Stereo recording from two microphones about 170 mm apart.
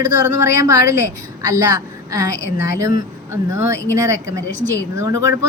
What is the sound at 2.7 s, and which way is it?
A woman's voice, 20° right (ahead or behind).